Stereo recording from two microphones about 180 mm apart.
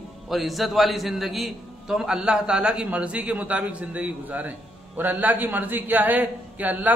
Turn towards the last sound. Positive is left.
turn(degrees=-10)  # may be behind; listen again after turning